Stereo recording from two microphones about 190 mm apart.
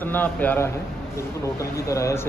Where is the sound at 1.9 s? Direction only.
15° left (ahead or behind).